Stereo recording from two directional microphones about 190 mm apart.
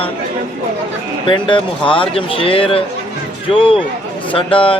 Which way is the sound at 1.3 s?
25° left (ahead or behind).